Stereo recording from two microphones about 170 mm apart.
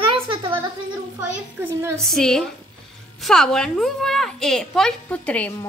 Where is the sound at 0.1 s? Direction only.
30° right (ahead or behind).